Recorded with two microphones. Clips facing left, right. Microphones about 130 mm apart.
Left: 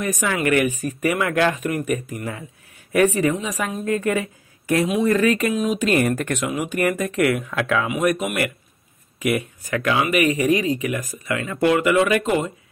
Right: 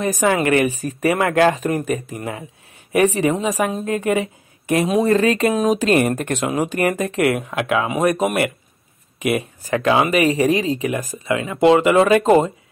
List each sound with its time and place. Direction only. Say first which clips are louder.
0.0 s speech: right 4 dB; 30° right (ahead or behind)
4.8 s speech: right 3 dB; 35° right (ahead or behind)
7.9 s speech: right 3 dB; 35° right (ahead or behind)